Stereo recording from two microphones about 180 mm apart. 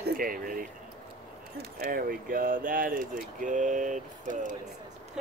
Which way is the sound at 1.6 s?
55° right (ahead or behind).